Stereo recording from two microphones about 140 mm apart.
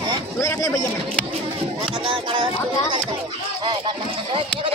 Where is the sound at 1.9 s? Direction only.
35° right (ahead or behind).